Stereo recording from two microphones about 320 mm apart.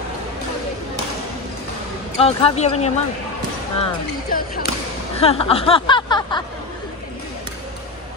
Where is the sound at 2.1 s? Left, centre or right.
Centre.